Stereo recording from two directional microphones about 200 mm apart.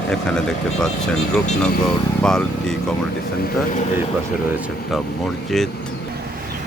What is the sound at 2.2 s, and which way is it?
Speech, 5° left (ahead or behind).